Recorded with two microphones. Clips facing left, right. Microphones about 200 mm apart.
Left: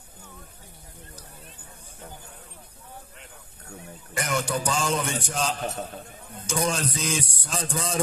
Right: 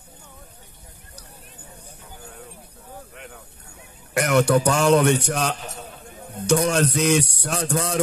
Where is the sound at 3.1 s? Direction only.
65° right (ahead or behind).